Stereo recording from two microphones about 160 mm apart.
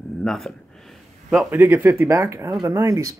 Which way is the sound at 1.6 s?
15° right (ahead or behind).